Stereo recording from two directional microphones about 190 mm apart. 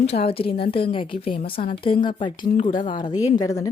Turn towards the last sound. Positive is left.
turn(degrees=20)  # may be behind; listen again after turning